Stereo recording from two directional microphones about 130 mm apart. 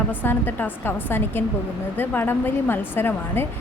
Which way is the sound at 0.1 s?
15° left (ahead or behind).